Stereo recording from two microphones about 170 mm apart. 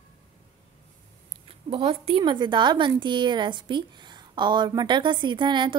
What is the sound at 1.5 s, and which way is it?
A woman's voice, 35° right (ahead or behind).